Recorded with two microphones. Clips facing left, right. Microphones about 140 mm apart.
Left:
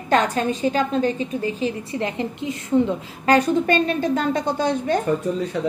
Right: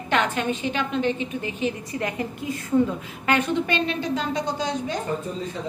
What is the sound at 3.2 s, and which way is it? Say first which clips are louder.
A woman's voice: left 5 dB; 40° left (ahead or behind).